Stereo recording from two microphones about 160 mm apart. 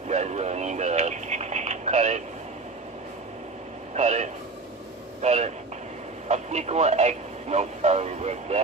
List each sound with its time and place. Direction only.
0.1 s radio: 45° right (ahead or behind)
3.9 s a sound: 45° right (ahead or behind)
6.2 s speech: 45° right (ahead or behind)